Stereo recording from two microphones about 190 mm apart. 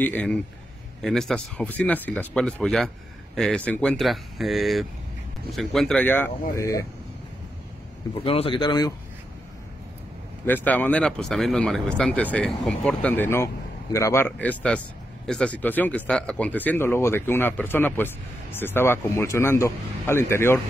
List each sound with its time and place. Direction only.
0.0 s a man's voice: 5° left (ahead or behind)
8.1 s speech: 30° left (ahead or behind)
10.4 s a man's voice: 10° left (ahead or behind)